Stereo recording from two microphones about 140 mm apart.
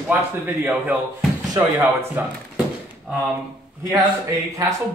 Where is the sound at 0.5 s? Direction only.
10° right (ahead or behind).